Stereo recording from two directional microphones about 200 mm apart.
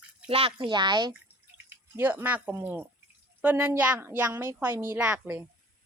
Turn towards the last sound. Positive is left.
turn(degrees=-5)  # may be behind; listen again after turning